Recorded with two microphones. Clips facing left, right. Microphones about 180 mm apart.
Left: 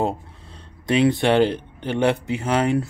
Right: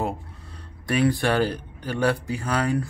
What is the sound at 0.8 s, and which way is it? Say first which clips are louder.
Speech: left 4 dB; 25° left (ahead or behind).